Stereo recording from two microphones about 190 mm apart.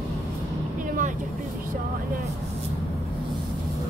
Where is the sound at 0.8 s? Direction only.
45° right (ahead or behind).